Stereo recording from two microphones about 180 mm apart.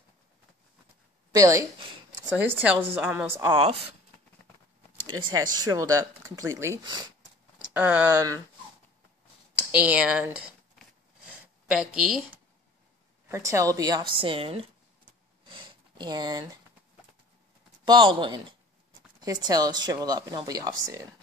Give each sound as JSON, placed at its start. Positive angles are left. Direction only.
{"t": 1.3, "sound": "speech", "side_deg": -20}
{"t": 5.3, "sound": "speech", "side_deg": -20}
{"t": 7.7, "sound": "speech", "side_deg": -10}
{"t": 9.6, "sound": "speech", "side_deg": -5}
{"t": 11.7, "sound": "speech", "side_deg": -5}
{"t": 13.3, "sound": "speech", "side_deg": -15}
{"t": 15.4, "sound": "sniff", "side_deg": -25}
{"t": 17.8, "sound": "speech", "side_deg": -25}